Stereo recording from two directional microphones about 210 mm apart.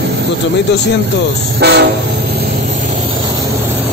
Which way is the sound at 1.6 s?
55° right (ahead or behind).